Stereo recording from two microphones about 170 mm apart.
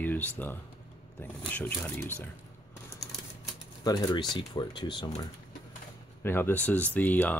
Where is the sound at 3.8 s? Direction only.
25° left (ahead or behind).